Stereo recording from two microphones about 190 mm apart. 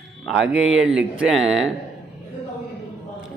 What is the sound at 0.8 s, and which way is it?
Speech, 5° right (ahead or behind).